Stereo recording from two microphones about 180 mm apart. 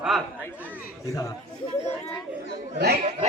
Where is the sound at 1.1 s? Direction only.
20° left (ahead or behind).